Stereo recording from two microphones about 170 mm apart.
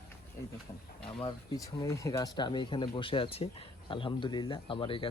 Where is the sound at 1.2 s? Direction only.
20° left (ahead or behind).